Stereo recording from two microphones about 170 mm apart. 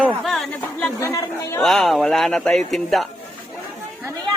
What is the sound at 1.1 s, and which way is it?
Chatter, 20° left (ahead or behind).